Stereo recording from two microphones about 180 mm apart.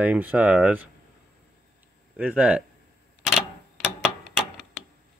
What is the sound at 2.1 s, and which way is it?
Speech, 10° right (ahead or behind).